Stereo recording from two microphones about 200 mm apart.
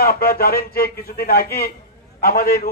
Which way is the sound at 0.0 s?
50° left (ahead or behind).